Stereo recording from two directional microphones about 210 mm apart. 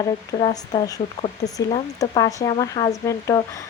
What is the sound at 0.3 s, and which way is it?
Speech, 25° left (ahead or behind).